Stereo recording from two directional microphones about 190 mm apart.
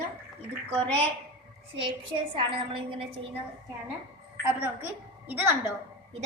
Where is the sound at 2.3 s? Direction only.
25° right (ahead or behind).